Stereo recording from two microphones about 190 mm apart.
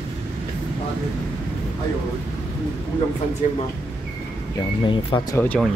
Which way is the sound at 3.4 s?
40° left (ahead or behind).